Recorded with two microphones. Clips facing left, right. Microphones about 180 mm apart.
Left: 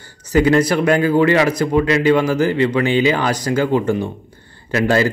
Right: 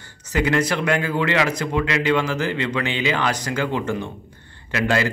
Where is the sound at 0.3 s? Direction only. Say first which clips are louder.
Left 7 dB; 35° left (ahead or behind).